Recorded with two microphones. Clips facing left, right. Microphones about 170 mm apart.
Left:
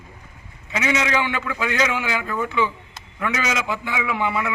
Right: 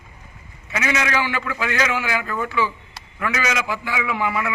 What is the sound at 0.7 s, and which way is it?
A man's voice, 15° left (ahead or behind).